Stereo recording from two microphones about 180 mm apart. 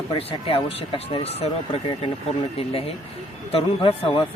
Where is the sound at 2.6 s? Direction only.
30° left (ahead or behind).